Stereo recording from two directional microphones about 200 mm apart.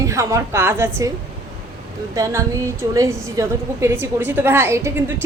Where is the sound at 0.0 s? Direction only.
15° right (ahead or behind).